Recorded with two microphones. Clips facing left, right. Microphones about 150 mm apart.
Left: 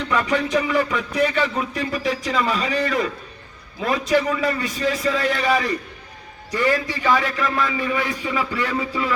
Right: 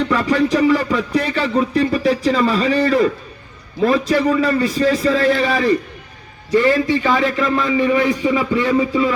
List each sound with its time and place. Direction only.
0.1 s a man's voice: 35° right (ahead or behind)